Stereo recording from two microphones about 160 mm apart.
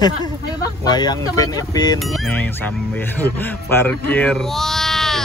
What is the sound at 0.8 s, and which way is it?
Speech, 25° left (ahead or behind).